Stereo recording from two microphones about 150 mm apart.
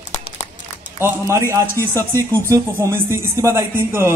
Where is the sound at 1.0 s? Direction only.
20° right (ahead or behind).